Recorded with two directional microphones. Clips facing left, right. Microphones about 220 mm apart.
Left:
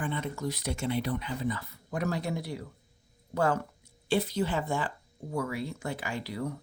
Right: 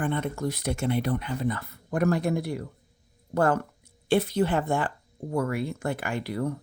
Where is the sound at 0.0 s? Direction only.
55° right (ahead or behind).